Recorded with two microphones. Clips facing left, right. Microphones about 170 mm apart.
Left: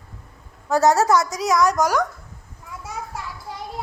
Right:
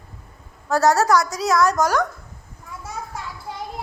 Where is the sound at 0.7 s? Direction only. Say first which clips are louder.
Even; 20° left (ahead or behind).